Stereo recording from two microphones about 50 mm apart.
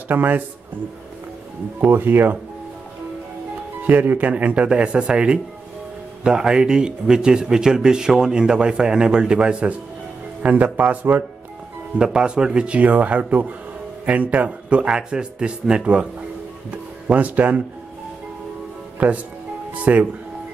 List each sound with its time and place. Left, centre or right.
0.1 s speech: right
1.9 s speech: right
3.8 s a man's voice: right
12.0 s a man's voice: centre
18.9 s a man's voice: right